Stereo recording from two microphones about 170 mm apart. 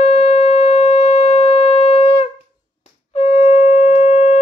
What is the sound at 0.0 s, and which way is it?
Shofar, 40° left (ahead or behind).